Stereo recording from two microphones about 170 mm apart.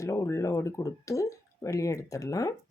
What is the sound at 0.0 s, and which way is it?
Speech, 20° left (ahead or behind).